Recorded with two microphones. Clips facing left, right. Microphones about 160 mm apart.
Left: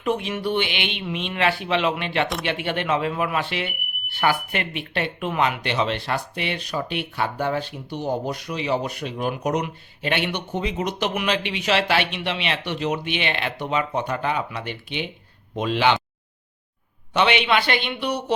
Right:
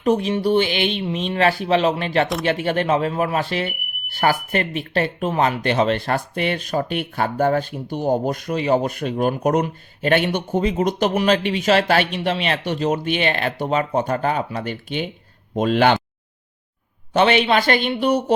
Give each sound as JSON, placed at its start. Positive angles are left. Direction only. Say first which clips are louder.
{"t": 0.0, "sound": "speech", "louder": "right 6 dB", "side_deg": -40}
{"t": 17.2, "sound": "speech", "louder": "right 4 dB", "side_deg": -40}